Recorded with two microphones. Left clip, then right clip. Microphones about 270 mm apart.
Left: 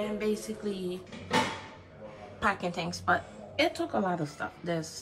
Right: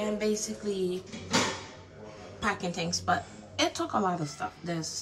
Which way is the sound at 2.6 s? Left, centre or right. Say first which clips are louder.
Right 1 dB; centre.